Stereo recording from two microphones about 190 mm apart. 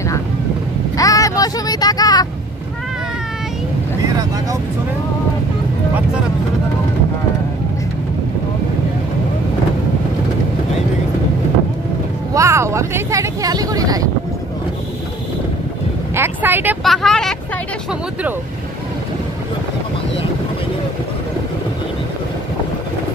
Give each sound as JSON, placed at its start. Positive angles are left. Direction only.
{"t": 0.9, "sound": "vehicle", "side_deg": 20}
{"t": 4.0, "sound": "vehicle", "side_deg": -20}
{"t": 12.4, "sound": "speech", "side_deg": -15}
{"t": 16.2, "sound": "speech", "side_deg": -10}
{"t": 16.8, "sound": "speech", "side_deg": 0}